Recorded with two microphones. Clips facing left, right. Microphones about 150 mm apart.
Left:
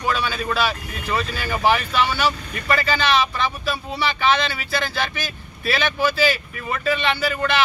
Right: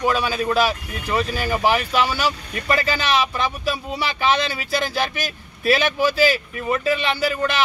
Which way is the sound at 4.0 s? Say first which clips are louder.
Left 1 dB; 40° right (ahead or behind).